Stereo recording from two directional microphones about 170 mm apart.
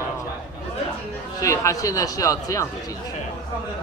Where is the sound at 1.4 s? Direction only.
20° left (ahead or behind).